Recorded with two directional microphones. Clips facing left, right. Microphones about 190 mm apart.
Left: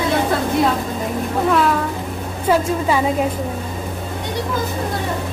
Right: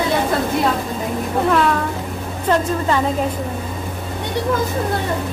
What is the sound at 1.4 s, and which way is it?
A woman's voice, centre (ahead or behind).